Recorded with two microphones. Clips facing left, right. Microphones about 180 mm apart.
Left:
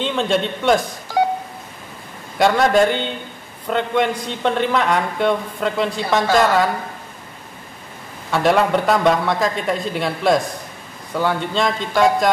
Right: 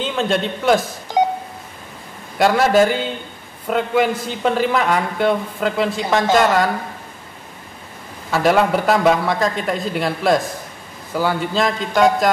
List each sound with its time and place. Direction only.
0.0 s a man's voice: centre (ahead or behind)
1.2 s telephone dialing: 20° right (ahead or behind)
2.3 s a man's voice: centre (ahead or behind)
8.3 s a man's voice: centre (ahead or behind)